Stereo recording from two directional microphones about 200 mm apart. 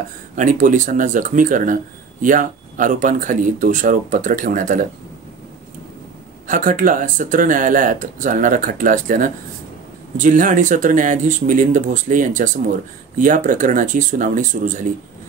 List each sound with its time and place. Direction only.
0.4 s speech: 40° right (ahead or behind)
6.4 s speech: 40° right (ahead or behind)